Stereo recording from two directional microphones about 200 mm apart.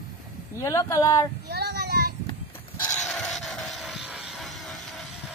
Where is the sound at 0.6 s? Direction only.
15° left (ahead or behind).